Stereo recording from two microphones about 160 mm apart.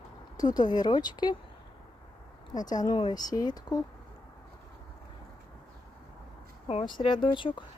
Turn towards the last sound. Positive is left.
turn(degrees=30)  # may be behind; listen again after turning